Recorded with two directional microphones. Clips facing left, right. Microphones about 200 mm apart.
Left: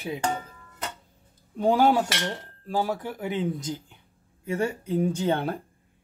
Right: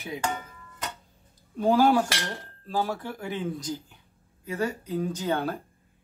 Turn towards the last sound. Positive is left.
turn(degrees=25)  # may be behind; listen again after turning